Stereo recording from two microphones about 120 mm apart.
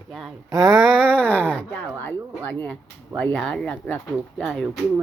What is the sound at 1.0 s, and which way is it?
Speech, 10° left (ahead or behind).